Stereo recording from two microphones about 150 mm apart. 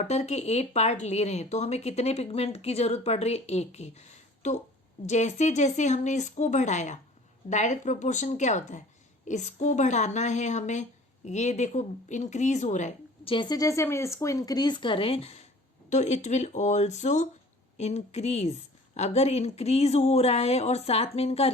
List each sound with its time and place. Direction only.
0.0 s speech: 45° left (ahead or behind)
13.2 s speech: 35° left (ahead or behind)